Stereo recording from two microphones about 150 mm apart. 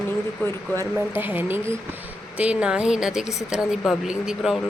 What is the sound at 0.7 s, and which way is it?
Speech, 15° right (ahead or behind).